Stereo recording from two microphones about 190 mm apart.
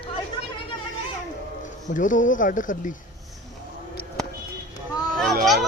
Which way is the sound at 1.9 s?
40° left (ahead or behind).